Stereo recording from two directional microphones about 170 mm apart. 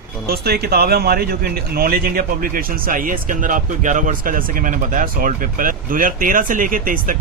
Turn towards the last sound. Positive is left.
turn(degrees=-55)  # may be behind; listen again after turning